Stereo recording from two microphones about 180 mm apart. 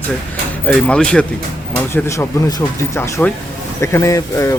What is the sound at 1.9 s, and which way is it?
Speech, 15° left (ahead or behind).